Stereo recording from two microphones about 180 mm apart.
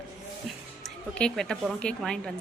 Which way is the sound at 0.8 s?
5° left (ahead or behind).